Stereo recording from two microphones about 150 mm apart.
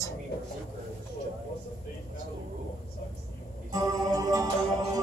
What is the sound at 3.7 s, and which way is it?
Music, 25° right (ahead or behind).